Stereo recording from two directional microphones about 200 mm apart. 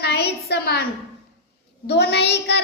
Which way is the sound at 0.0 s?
55° left (ahead or behind).